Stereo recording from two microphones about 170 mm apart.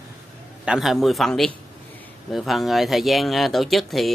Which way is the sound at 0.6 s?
5° right (ahead or behind).